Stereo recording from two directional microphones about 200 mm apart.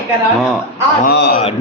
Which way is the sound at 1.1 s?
50° left (ahead or behind).